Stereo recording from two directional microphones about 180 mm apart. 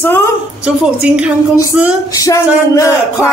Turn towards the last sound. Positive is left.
turn(degrees=15)  # may be behind; listen again after turning